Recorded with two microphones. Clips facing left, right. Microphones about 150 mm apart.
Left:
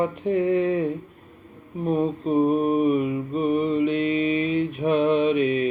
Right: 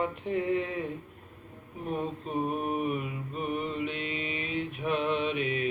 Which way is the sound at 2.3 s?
35° left (ahead or behind).